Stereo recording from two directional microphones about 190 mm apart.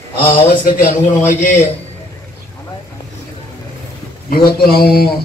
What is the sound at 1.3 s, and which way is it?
Speech, 40° left (ahead or behind).